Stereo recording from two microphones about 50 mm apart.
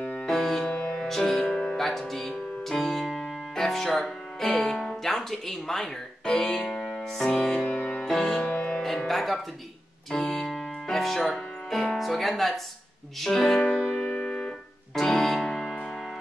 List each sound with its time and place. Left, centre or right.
0.3 s music: centre
0.7 s music: left
0.9 s music: centre
8.5 s music: left
8.8 s music: centre
10.1 s keyboard: centre
11.3 s speech: centre
13.2 s music: centre
13.7 s keyboard: centre
15.0 s music: centre